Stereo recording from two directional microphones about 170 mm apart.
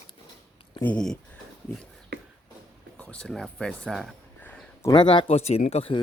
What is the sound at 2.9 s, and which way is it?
Speech, 5° left (ahead or behind).